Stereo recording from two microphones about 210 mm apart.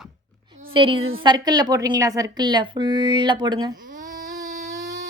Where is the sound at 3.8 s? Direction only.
40° right (ahead or behind).